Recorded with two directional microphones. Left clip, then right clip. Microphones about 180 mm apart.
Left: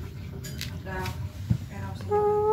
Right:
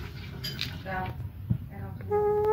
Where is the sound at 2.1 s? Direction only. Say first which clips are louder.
Left 2 dB; 5° left (ahead or behind).